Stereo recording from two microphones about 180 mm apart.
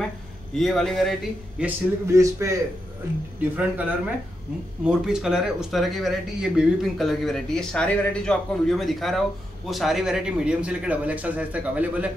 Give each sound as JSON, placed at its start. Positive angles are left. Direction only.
{"t": 0.6, "sound": "speech", "side_deg": 0}
{"t": 1.6, "sound": "a man's voice", "side_deg": -15}
{"t": 4.8, "sound": "speech", "side_deg": -5}